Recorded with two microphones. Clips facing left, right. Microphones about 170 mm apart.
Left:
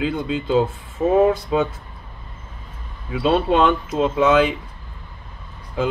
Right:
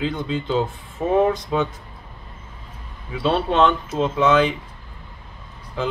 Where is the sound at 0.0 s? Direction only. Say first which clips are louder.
Left 2 dB; 10° left (ahead or behind).